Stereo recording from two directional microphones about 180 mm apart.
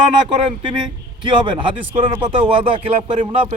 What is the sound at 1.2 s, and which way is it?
A man's voice, 25° right (ahead or behind).